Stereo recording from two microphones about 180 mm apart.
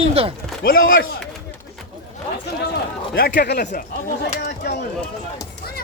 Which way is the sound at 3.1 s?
55° left (ahead or behind).